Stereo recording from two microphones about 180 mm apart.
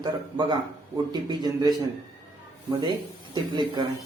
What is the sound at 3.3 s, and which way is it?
Speech, 25° right (ahead or behind).